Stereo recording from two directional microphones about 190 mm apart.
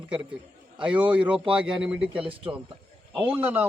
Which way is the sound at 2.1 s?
30° right (ahead or behind).